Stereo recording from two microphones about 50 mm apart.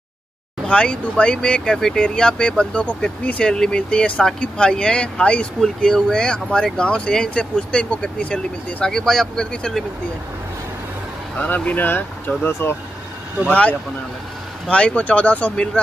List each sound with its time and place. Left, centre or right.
0.7 s speech: left
5.8 s speech: centre
8.9 s speech: centre
11.3 s speech: left
12.4 s speech: left
13.5 s speech: left